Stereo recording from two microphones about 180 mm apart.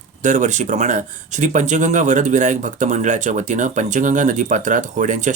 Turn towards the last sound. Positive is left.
turn(degrees=-45)  # may be behind; listen again after turning